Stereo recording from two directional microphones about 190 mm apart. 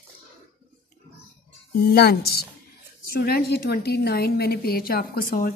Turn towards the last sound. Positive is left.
turn(degrees=50)  # may be behind; listen again after turning